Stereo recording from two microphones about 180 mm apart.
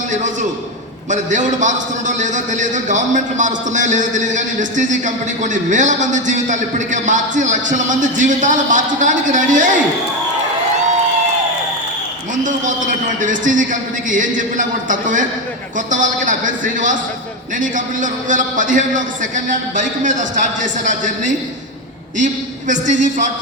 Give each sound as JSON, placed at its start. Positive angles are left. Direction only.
{"t": 1.1, "sound": "a man's voice", "side_deg": -45}
{"t": 12.4, "sound": "a man's voice", "side_deg": -45}